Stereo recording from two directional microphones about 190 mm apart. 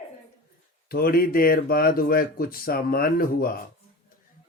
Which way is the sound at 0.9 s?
50° left (ahead or behind).